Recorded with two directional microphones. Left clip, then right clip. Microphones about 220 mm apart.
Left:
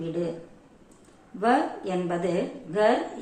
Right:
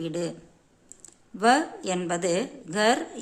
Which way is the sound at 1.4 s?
40° right (ahead or behind).